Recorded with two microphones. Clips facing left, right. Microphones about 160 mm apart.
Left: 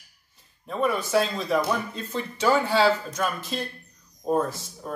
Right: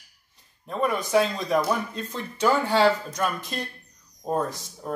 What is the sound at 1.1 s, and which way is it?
Speech, 5° left (ahead or behind).